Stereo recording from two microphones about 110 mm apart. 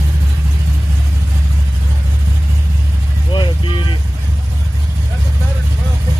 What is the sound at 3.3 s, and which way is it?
Vehicle, 45° left (ahead or behind).